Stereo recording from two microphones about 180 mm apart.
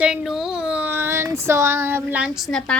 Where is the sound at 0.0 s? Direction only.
5° right (ahead or behind).